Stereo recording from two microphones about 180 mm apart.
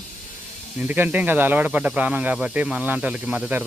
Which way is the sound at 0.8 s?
10° right (ahead or behind).